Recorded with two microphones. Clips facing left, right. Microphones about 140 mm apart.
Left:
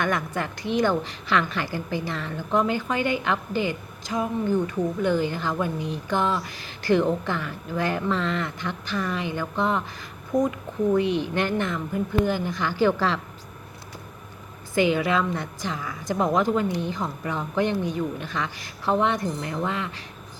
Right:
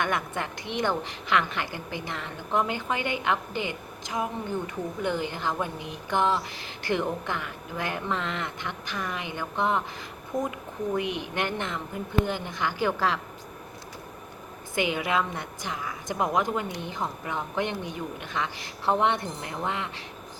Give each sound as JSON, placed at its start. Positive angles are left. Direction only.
{"t": 0.0, "sound": "a woman's voice", "side_deg": -20}
{"t": 10.9, "sound": "a woman's voice", "side_deg": -15}
{"t": 14.8, "sound": "a woman's voice", "side_deg": -15}